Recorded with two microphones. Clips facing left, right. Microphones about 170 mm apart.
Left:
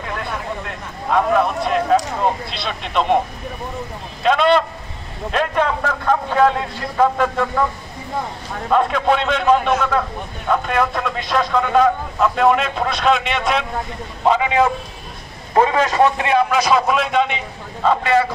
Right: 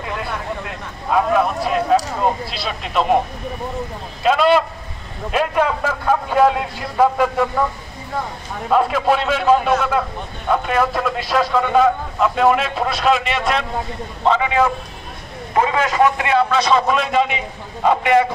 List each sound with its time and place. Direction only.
1.1 s a man's voice: 5° right (ahead or behind)
4.2 s a man's voice: 5° right (ahead or behind)
8.6 s a man's voice: 5° right (ahead or behind)
14.2 s a man's voice: 15° left (ahead or behind)
15.5 s a man's voice: 35° left (ahead or behind); by 17.4 s centre (ahead or behind)
17.8 s a man's voice: 15° right (ahead or behind)